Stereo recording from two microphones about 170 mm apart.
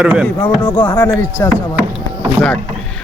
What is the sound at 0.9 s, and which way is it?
Speech, 10° left (ahead or behind).